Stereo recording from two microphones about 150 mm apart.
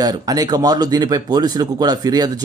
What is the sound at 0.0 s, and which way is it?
Speech, 25° right (ahead or behind).